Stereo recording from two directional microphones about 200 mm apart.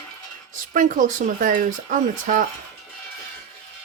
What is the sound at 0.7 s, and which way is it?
Speech, 40° right (ahead or behind).